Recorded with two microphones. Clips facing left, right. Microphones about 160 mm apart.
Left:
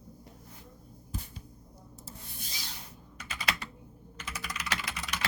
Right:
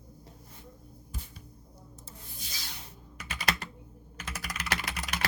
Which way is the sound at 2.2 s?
70° left (ahead or behind).